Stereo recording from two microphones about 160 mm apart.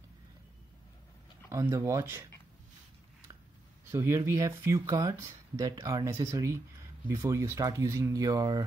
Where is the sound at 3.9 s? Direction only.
15° right (ahead or behind).